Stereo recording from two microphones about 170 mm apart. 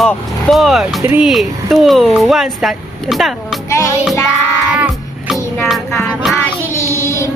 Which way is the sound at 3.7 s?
15° left (ahead or behind).